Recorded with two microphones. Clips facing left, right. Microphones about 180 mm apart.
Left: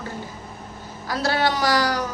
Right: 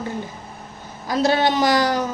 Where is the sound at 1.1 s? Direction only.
20° right (ahead or behind).